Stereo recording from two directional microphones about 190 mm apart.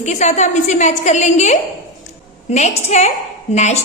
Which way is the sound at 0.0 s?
35° left (ahead or behind).